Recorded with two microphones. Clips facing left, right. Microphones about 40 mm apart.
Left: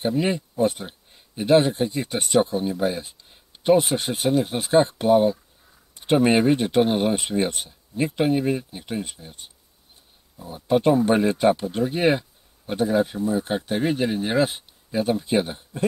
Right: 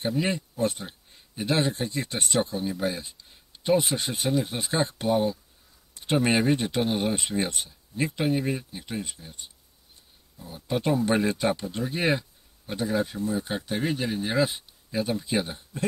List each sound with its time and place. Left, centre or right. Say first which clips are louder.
0.0 s speech: left 4 dB; centre
10.4 s speech: left 8 dB; centre